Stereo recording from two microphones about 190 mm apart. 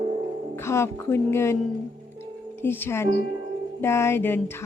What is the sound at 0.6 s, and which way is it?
Speech, 15° left (ahead or behind).